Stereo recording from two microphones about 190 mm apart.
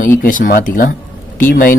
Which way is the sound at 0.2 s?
45° left (ahead or behind).